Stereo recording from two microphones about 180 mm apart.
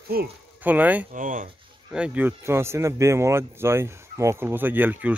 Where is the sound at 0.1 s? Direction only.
55° right (ahead or behind).